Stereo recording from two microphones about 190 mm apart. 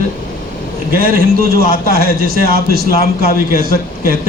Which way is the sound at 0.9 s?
50° right (ahead or behind).